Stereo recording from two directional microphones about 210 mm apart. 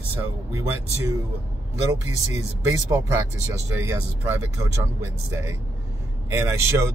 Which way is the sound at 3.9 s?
15° right (ahead or behind).